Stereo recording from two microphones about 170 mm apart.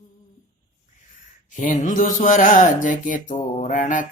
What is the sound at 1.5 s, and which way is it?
Speech, 45° left (ahead or behind).